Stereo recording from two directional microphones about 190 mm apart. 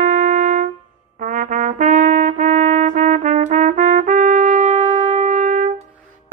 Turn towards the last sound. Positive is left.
turn(degrees=-40)  # may be behind; listen again after turning